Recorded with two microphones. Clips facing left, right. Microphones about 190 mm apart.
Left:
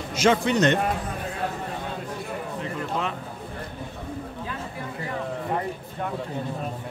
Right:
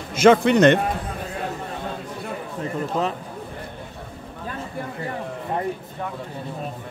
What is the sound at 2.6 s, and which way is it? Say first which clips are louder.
Speech: right 6 dB; 40° right (ahead or behind).